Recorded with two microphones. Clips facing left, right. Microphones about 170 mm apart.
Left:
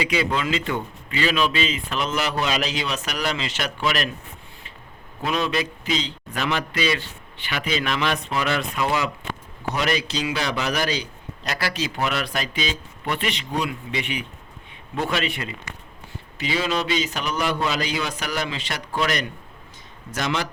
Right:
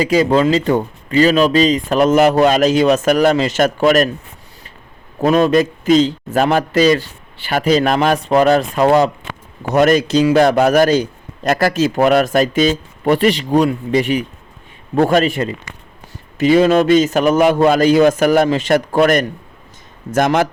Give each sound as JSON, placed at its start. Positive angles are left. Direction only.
{"t": 0.0, "sound": "a man's voice", "side_deg": -40}
{"t": 5.2, "sound": "a man's voice", "side_deg": -45}
{"t": 16.4, "sound": "a man's voice", "side_deg": -50}